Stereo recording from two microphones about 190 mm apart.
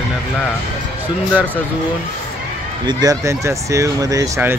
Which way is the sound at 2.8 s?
20° right (ahead or behind).